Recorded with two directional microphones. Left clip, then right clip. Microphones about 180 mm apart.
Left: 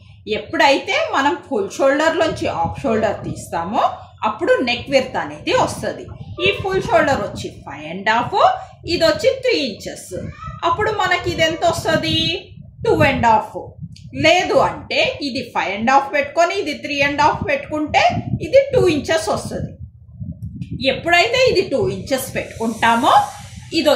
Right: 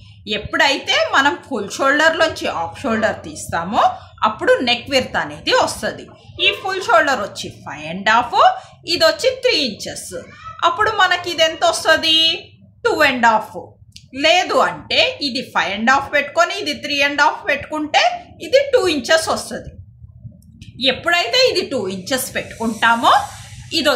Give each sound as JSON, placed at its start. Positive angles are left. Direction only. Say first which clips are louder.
{"t": 0.3, "sound": "a woman's voice", "louder": "left 1 dB", "side_deg": -40}
{"t": 20.5, "sound": "a woman's voice", "louder": "right 1 dB", "side_deg": -40}